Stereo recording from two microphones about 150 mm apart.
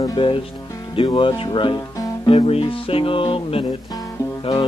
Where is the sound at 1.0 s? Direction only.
35° left (ahead or behind).